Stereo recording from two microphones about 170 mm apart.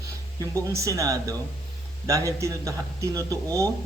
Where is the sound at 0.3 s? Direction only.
20° right (ahead or behind).